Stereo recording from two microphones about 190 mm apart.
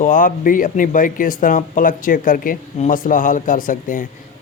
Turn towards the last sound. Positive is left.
turn(degrees=45)  # may be behind; listen again after turning